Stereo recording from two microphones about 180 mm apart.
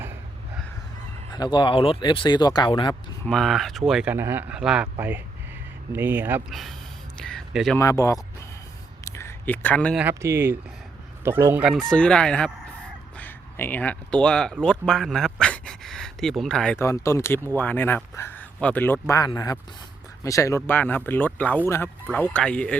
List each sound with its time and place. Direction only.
1.3 s speech: 25° left (ahead or behind)
3.2 s speech: centre (ahead or behind)
6.5 s a man's voice: centre (ahead or behind)
7.8 s speech: 20° left (ahead or behind)
9.0 s a sound: 15° left (ahead or behind)
10.0 s speech: 15° right (ahead or behind)
11.2 s fowl: 15° right (ahead or behind)
11.6 s speech: centre (ahead or behind)
14.6 s a sound: 5° left (ahead or behind)
16.8 s speech: 15° left (ahead or behind)